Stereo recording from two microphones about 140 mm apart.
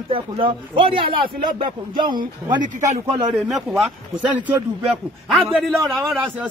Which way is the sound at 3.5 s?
Centre (ahead or behind).